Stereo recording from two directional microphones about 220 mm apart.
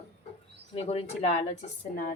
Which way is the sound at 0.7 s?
30° left (ahead or behind).